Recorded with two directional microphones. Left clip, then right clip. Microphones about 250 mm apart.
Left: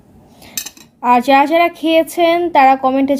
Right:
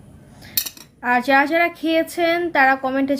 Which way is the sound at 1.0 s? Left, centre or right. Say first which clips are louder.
Left 6 dB; centre.